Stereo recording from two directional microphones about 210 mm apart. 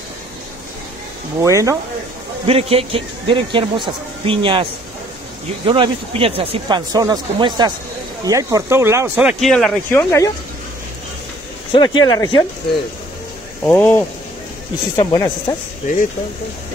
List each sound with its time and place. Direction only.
1.4 s speech: 15° right (ahead or behind)
2.4 s speech: 30° right (ahead or behind)
5.7 s speech: 25° right (ahead or behind); by 10.3 s 15° left (ahead or behind)
11.7 s speech: 20° left (ahead or behind)
13.7 s speech: 10° left (ahead or behind)